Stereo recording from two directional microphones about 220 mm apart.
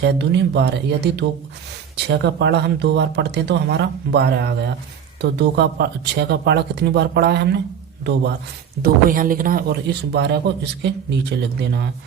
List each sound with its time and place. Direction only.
0.0 s a man's voice: 50° right (ahead or behind)
8.8 s a man's voice: 40° right (ahead or behind)